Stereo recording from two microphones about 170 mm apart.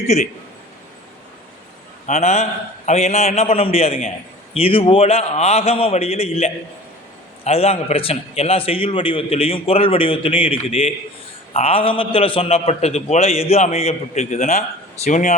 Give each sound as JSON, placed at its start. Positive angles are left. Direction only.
{"t": 0.1, "sound": "a man's voice", "side_deg": 40}
{"t": 2.0, "sound": "a man's voice", "side_deg": 40}